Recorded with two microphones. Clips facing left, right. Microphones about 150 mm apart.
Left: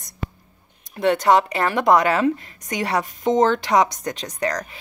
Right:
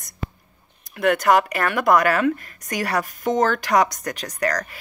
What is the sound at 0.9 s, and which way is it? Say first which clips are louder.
A woman's voice: left 1 dB; 30° left (ahead or behind).